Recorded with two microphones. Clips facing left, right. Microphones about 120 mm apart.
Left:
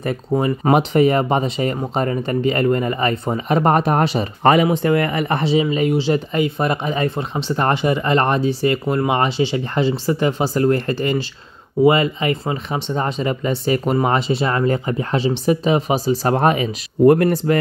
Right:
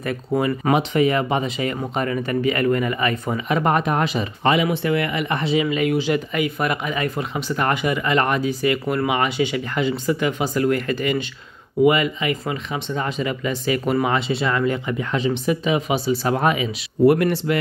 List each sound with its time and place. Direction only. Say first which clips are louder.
0.7 s speech: left 5 dB; 40° left (ahead or behind)